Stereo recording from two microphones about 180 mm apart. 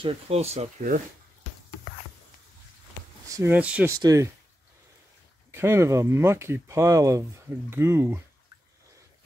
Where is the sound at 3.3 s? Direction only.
10° right (ahead or behind).